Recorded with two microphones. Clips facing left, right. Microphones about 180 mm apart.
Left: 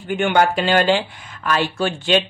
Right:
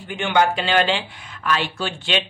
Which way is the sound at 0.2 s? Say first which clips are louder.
Left 2 dB; 50° left (ahead or behind).